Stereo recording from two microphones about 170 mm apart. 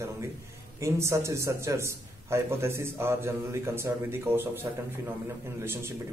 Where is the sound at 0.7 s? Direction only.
15° right (ahead or behind).